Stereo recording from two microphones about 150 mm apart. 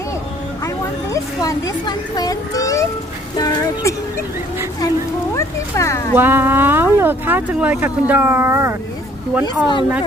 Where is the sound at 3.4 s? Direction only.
20° left (ahead or behind).